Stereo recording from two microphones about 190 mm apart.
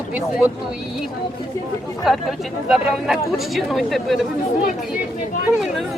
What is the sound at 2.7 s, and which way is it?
A woman's voice, centre (ahead or behind).